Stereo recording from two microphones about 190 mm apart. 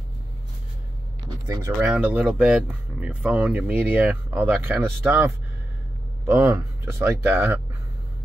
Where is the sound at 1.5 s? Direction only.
20° right (ahead or behind).